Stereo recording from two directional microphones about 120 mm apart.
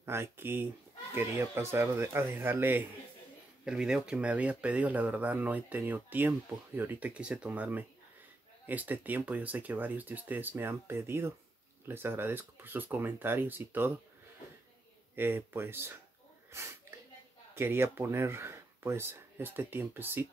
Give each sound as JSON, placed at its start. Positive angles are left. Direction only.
{"t": 0.0, "sound": "speech", "side_deg": -20}
{"t": 3.6, "sound": "speech", "side_deg": -5}
{"t": 15.1, "sound": "speech", "side_deg": -20}
{"t": 17.6, "sound": "speech", "side_deg": -20}